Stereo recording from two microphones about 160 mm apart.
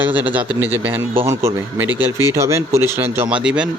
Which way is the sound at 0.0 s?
10° right (ahead or behind).